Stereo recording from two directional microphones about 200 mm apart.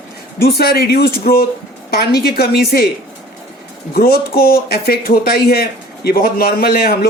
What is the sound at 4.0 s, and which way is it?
Speech, 50° left (ahead or behind).